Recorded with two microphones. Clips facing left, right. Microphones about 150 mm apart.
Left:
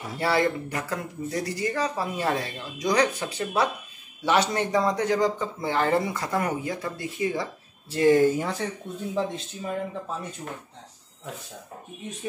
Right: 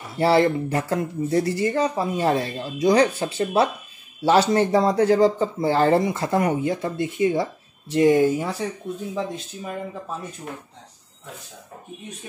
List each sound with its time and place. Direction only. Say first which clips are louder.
0.2 s speech: right 6 dB; 30° right (ahead or behind); by 9.4 s centre (ahead or behind)